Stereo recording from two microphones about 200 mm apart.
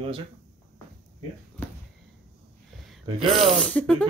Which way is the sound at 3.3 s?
Centre (ahead or behind).